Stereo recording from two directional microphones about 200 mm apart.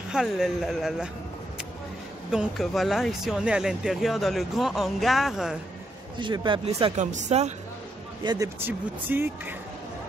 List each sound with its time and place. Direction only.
0.1 s speech: centre (ahead or behind)
2.3 s speech: centre (ahead or behind)
6.1 s speech: 25° right (ahead or behind)
7.0 s speech: 35° right (ahead or behind)
8.2 s speech: 20° right (ahead or behind)
8.6 s speech: 10° right (ahead or behind)